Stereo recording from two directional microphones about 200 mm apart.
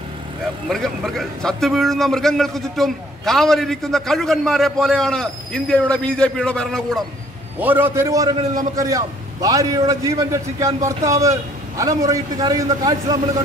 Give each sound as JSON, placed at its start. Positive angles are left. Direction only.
{"t": 0.7, "sound": "a man's voice", "side_deg": 0}
{"t": 7.5, "sound": "a man's voice", "side_deg": -10}